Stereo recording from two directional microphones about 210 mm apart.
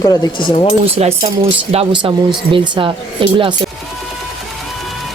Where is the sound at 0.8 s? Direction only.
30° right (ahead or behind).